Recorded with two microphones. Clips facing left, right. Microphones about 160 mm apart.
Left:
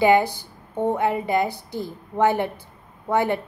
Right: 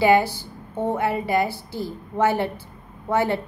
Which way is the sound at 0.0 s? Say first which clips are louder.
Even; 15° left (ahead or behind).